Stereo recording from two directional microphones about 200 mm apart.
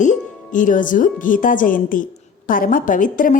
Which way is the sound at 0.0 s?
40° left (ahead or behind).